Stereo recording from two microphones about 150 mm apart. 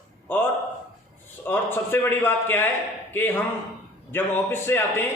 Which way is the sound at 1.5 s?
15° left (ahead or behind).